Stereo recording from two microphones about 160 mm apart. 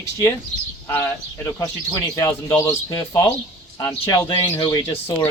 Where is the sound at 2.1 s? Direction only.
20° left (ahead or behind).